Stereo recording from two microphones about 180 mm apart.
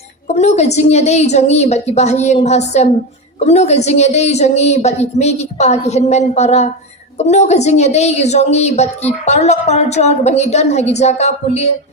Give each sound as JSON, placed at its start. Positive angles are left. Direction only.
{"t": 0.3, "sound": "a woman's voice", "side_deg": 40}